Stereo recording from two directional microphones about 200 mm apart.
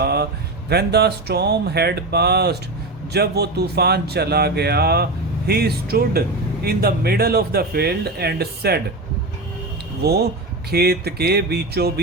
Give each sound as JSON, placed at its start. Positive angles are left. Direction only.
{"t": 0.0, "sound": "a sound", "side_deg": -55}
{"t": 0.7, "sound": "speech", "side_deg": -55}
{"t": 10.0, "sound": "speech", "side_deg": -50}